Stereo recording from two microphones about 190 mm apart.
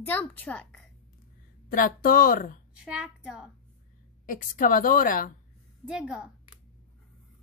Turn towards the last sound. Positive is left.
turn(degrees=-5)  # may be behind; listen again after turning